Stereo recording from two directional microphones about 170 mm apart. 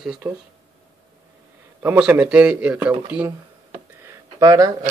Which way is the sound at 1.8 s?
10° right (ahead or behind).